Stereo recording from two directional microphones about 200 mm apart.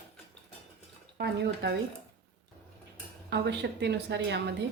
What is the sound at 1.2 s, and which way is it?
Speech, 55° right (ahead or behind).